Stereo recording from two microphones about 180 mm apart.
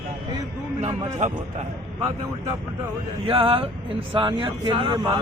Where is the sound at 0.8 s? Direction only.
35° right (ahead or behind).